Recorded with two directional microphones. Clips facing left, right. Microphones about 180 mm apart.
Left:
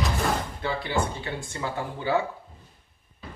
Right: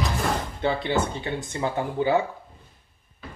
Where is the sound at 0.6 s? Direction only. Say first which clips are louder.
Right 7 dB; 25° right (ahead or behind).